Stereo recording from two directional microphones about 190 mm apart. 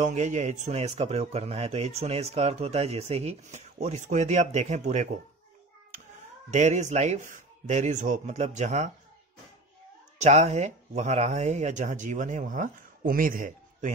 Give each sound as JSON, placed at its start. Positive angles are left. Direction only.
{"t": 0.0, "sound": "speech", "side_deg": -40}
{"t": 6.5, "sound": "speech", "side_deg": -40}
{"t": 10.1, "sound": "speech", "side_deg": -35}